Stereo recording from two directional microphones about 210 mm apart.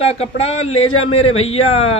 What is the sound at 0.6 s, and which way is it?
Speech, 80° left.